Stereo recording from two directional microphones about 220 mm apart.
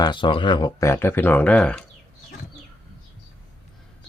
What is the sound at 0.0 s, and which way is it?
Speech, 20° left (ahead or behind).